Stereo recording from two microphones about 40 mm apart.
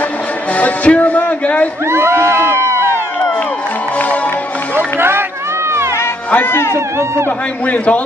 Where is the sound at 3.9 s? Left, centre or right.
Left.